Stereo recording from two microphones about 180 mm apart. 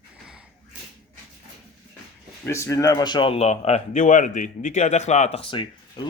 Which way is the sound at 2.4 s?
15° left (ahead or behind).